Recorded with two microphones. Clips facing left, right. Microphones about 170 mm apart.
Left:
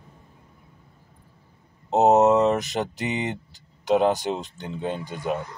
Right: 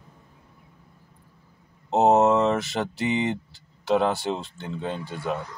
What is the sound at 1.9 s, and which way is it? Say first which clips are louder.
Speech: left 1 dB; 20° left (ahead or behind).